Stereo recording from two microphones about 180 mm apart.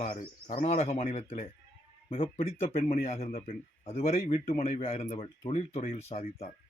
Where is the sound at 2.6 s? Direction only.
35° left (ahead or behind).